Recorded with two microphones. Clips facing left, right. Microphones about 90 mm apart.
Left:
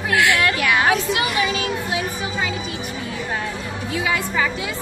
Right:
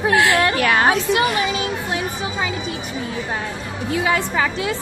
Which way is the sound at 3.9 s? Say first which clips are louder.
Right 3 dB; 40° right (ahead or behind).